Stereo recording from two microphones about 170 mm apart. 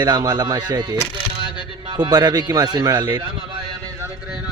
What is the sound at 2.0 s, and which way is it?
Speech, 25° right (ahead or behind).